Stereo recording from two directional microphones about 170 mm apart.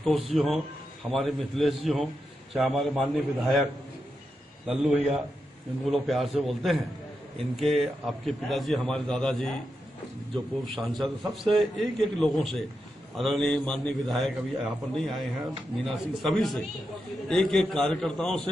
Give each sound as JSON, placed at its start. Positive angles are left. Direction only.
{"t": 0.0, "sound": "a man's voice", "side_deg": 0}
{"t": 5.9, "sound": "a man's voice", "side_deg": 0}